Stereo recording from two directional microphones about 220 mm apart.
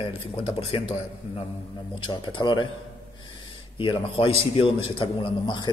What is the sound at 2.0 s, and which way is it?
Speech, 20° left (ahead or behind).